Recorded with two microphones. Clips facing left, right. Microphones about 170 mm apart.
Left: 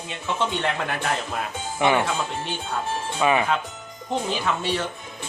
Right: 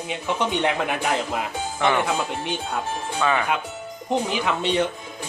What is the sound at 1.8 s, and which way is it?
Speech, 15° left (ahead or behind).